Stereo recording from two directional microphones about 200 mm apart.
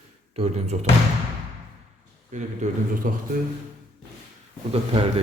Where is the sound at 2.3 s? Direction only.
40° right (ahead or behind).